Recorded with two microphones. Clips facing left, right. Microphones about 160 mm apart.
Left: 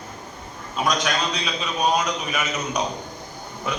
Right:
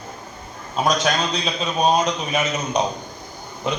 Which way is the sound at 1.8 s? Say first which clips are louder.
Right 4 dB; 25° right (ahead or behind).